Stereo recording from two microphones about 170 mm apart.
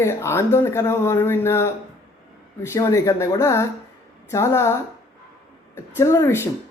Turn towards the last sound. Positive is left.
turn(degrees=15)  # may be behind; listen again after turning